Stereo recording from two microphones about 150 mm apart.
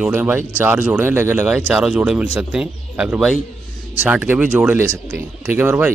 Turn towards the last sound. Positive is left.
turn(degrees=-15)  # may be behind; listen again after turning